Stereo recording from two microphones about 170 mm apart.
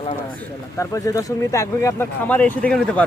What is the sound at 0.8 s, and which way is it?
Speech, 20° left (ahead or behind).